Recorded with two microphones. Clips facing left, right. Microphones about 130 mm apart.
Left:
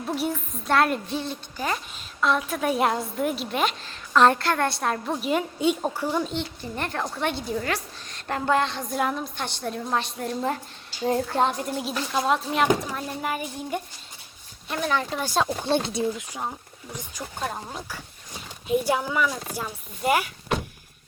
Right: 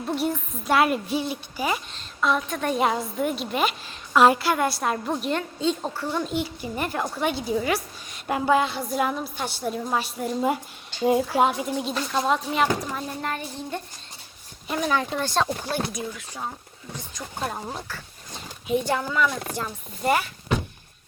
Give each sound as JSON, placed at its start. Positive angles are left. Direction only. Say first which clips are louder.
{"t": 0.1, "sound": "a woman's voice", "louder": "right 2 dB", "side_deg": 0}
{"t": 1.9, "sound": "a woman's voice", "louder": "even", "side_deg": 5}
{"t": 5.4, "sound": "speech", "louder": "left 2 dB", "side_deg": 10}
{"t": 6.2, "sound": "a woman's voice", "louder": "right 3 dB", "side_deg": -10}
{"t": 14.7, "sound": "a woman's voice", "louder": "right 1 dB", "side_deg": 0}
{"t": 15.2, "sound": "speech", "louder": "even", "side_deg": 10}
{"t": 15.6, "sound": "speech", "louder": "left 5 dB", "side_deg": 25}
{"t": 16.3, "sound": "speech", "louder": "left 1 dB", "side_deg": 15}
{"t": 17.4, "sound": "a woman's voice", "louder": "right 1 dB", "side_deg": -5}
{"t": 18.7, "sound": "speech", "louder": "left 1 dB", "side_deg": 5}